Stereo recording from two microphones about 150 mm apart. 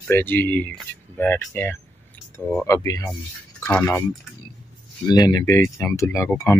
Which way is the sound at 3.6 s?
5° left (ahead or behind).